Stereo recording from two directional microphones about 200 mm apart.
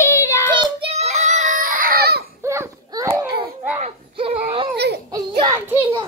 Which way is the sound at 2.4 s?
15° right (ahead or behind).